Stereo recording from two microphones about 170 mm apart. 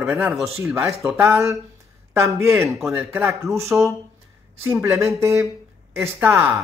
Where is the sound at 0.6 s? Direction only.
15° right (ahead or behind).